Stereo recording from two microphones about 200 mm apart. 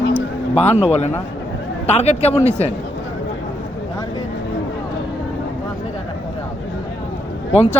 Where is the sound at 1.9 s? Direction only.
30° left (ahead or behind).